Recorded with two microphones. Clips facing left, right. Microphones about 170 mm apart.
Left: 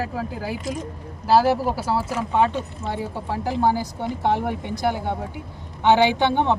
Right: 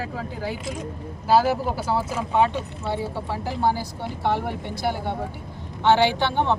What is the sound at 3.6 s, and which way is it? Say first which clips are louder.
Speech: left 1 dB; 45° left (ahead or behind).